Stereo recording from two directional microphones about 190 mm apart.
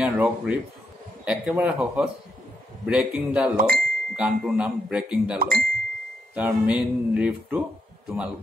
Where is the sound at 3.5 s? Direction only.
50° right (ahead or behind).